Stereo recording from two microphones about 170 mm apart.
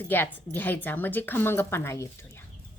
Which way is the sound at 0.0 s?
10° left (ahead or behind).